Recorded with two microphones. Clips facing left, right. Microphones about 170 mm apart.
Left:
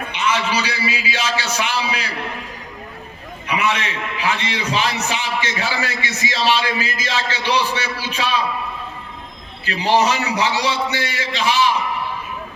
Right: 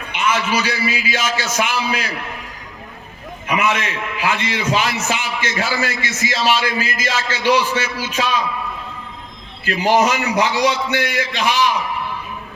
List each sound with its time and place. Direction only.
0.1 s a sound: 50° right (ahead or behind)
0.5 s a man's voice: 50° right (ahead or behind)
3.4 s a man's voice: 50° right (ahead or behind)
9.6 s a man's voice: 45° right (ahead or behind)